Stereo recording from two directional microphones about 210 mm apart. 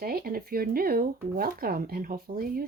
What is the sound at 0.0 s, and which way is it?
Speech, 45° right (ahead or behind).